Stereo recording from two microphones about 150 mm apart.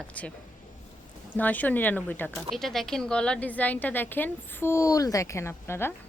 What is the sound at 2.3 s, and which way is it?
A woman's voice, centre (ahead or behind).